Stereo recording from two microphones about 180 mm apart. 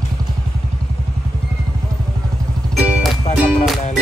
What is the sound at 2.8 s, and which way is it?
Music, 5° right (ahead or behind).